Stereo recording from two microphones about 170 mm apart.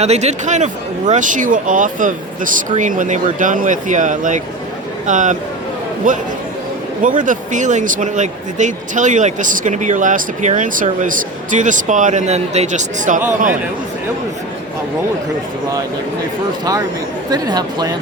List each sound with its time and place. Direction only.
0.0 s speech: 40° right (ahead or behind)
17.3 s speech: 25° right (ahead or behind)